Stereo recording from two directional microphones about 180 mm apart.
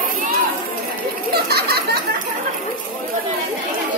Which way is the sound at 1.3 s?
60° right (ahead or behind).